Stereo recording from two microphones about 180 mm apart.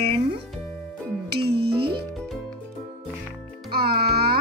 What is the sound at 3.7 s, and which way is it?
Music, 60° right (ahead or behind).